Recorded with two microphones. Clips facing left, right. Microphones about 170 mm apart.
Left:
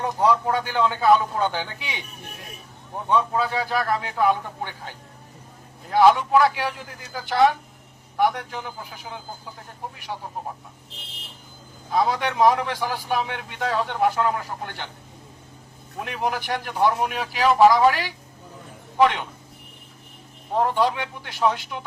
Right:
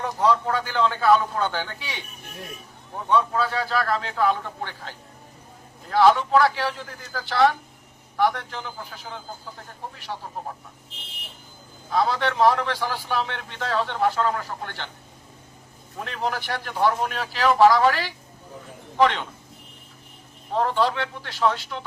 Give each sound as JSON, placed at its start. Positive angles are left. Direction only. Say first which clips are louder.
{"t": 0.3, "sound": "a man's voice", "louder": "even", "side_deg": 15}
{"t": 3.1, "sound": "a man's voice", "louder": "even", "side_deg": 15}
{"t": 11.9, "sound": "a man's voice", "louder": "left 1 dB", "side_deg": 15}
{"t": 16.0, "sound": "a man's voice", "louder": "left 2 dB", "side_deg": 15}
{"t": 20.5, "sound": "a man's voice", "louder": "left 1 dB", "side_deg": 15}